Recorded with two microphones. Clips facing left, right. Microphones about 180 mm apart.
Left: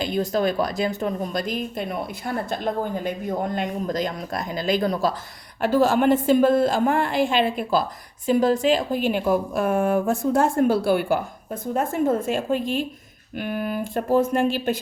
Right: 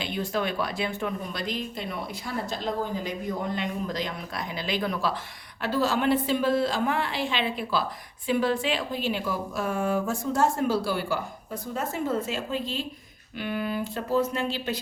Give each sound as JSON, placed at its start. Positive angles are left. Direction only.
{"t": 0.0, "sound": "a woman's voice", "side_deg": 40}